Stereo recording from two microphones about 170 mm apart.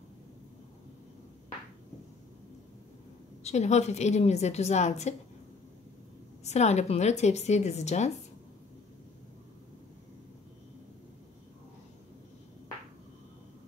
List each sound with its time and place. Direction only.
3.4 s a woman's voice: 40° left (ahead or behind)
6.4 s a woman's voice: 40° left (ahead or behind)